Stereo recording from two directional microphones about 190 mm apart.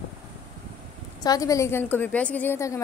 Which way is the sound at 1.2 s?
20° left (ahead or behind).